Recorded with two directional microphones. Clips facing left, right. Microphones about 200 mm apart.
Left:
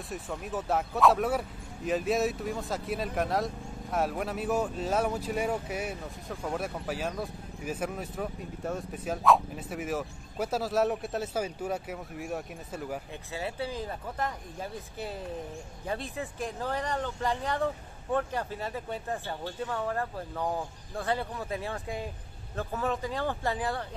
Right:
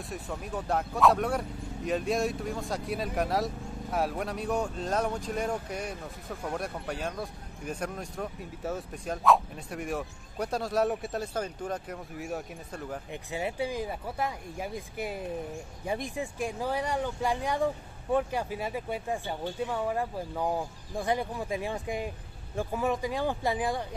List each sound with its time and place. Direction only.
0.1 s speech: centre (ahead or behind)
13.1 s speech: 15° right (ahead or behind)